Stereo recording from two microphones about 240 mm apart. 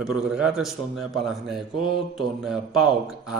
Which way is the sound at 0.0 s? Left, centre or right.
Centre.